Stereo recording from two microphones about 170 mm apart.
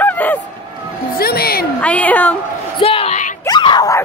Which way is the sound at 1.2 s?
65° left (ahead or behind).